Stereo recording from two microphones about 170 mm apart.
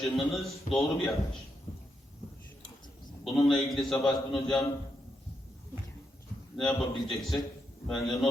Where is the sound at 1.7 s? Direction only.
35° left (ahead or behind).